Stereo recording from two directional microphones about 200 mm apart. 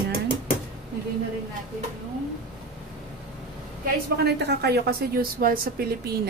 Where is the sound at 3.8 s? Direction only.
55° right (ahead or behind).